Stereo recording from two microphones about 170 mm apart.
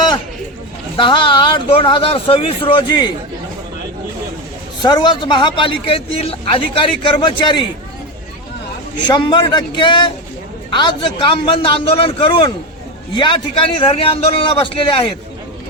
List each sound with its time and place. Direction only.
0.9 s speech: 30° left (ahead or behind)
4.8 s speech: 25° left (ahead or behind)
9.0 s a man's voice: 25° left (ahead or behind)